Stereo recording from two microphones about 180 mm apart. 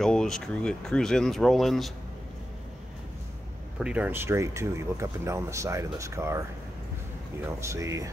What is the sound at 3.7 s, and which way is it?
Speech, 5° right (ahead or behind).